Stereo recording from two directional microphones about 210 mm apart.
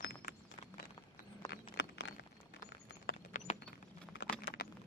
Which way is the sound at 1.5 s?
60° left (ahead or behind).